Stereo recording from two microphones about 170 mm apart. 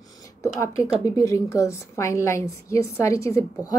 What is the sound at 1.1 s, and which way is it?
A woman's voice, 20° left (ahead or behind).